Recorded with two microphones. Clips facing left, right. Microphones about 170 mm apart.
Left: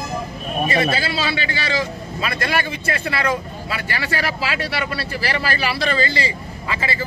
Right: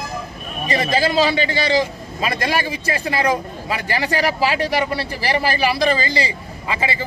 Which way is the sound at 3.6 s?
15° right (ahead or behind).